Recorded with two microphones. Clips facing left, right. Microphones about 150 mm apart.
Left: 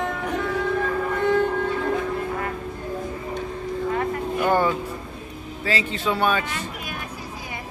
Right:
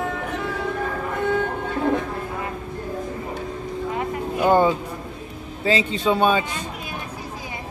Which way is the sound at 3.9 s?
20° right (ahead or behind).